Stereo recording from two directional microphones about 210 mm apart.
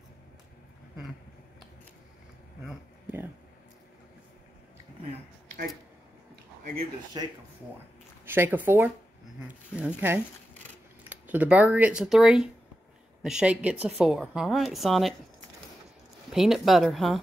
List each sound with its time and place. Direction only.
2.6 s a sound: 10° right (ahead or behind)
7.2 s speech: 25° right (ahead or behind)
8.3 s a woman's voice: 10° right (ahead or behind)
16.3 s a woman's voice: centre (ahead or behind)